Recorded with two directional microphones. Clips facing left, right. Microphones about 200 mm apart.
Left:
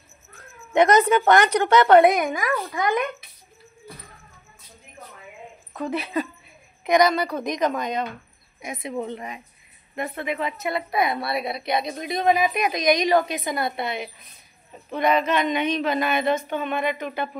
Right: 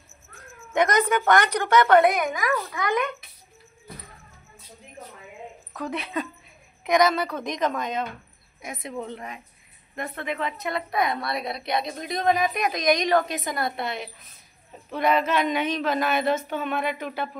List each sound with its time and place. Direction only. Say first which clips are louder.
0.7 s a woman's voice: left 5 dB; 25° left (ahead or behind)
5.8 s a woman's voice: left 4 dB; centre (ahead or behind)